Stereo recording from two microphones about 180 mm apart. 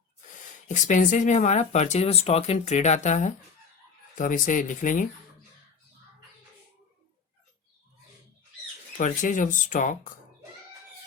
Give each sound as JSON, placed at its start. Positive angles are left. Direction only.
{"t": 0.7, "sound": "speech", "side_deg": 45}
{"t": 9.0, "sound": "speech", "side_deg": 45}